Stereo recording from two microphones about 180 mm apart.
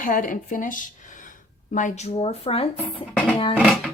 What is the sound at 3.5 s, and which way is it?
Speech, centre (ahead or behind).